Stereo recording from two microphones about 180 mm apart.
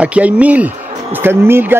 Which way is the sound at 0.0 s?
5° right (ahead or behind).